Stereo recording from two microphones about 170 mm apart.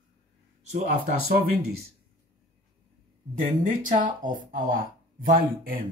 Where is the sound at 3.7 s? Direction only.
50° right (ahead or behind).